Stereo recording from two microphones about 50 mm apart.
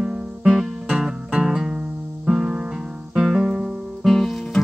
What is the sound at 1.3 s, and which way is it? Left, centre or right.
Guitar, centre.